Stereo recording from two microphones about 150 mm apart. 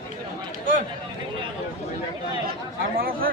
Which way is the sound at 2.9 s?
75° right (ahead or behind).